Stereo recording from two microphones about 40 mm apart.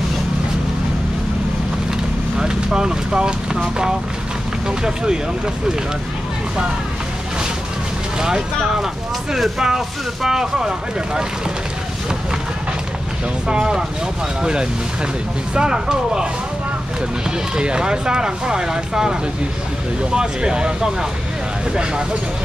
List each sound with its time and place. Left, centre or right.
2.3 s speech: centre
3.5 s speech: centre
9.3 s speech: centre
13.5 s speech: centre
17.6 s speech: right